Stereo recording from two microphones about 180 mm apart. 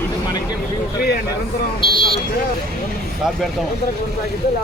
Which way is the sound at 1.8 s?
25° left (ahead or behind).